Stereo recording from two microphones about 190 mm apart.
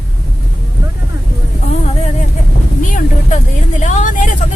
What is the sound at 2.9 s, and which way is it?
Speech, 40° left (ahead or behind).